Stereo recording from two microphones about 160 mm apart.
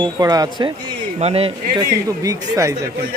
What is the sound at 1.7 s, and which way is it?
Speech, 20° right (ahead or behind).